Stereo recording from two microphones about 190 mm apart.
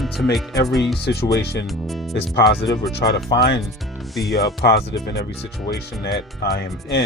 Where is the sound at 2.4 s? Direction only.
60° left (ahead or behind).